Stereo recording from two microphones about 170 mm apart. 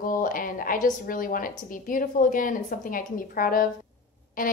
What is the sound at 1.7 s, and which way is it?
A woman's voice, 55° left (ahead or behind).